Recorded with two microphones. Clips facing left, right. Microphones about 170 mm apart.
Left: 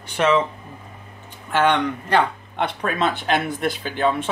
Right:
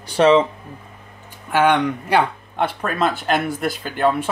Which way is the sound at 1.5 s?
10° right (ahead or behind).